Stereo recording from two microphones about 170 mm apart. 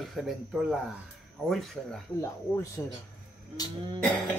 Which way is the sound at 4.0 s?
5° left (ahead or behind).